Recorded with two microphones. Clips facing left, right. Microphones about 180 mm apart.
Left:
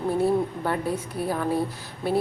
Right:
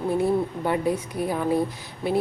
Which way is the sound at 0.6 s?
15° right (ahead or behind).